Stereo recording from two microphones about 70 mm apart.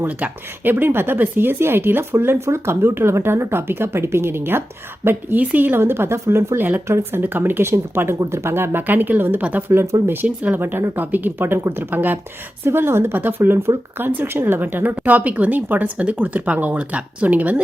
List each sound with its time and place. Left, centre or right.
0.0 s speech: right
5.8 s speech: right
6.6 s speech: right
10.2 s speech: right